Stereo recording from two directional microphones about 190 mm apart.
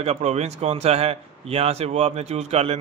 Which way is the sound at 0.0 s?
35° right (ahead or behind).